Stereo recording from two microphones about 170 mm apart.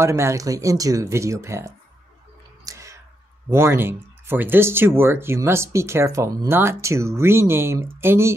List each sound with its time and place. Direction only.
0.0 s speech: 15° right (ahead or behind)
2.6 s a sound: 20° right (ahead or behind)
3.4 s speech: 15° right (ahead or behind)